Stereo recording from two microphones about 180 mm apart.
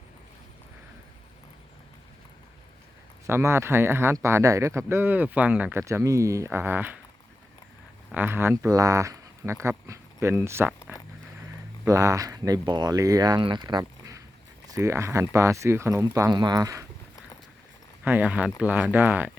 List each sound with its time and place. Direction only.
3.2 s speech: 15° right (ahead or behind)
8.1 s speech: 10° right (ahead or behind)
10.9 s walk: 10° right (ahead or behind)
11.9 s speech: 20° right (ahead or behind)
18.0 s speech: 10° right (ahead or behind)